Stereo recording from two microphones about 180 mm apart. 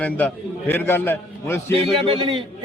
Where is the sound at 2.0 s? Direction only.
30° right (ahead or behind).